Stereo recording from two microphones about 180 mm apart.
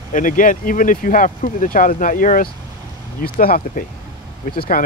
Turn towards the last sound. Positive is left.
turn(degrees=55)  # may be behind; listen again after turning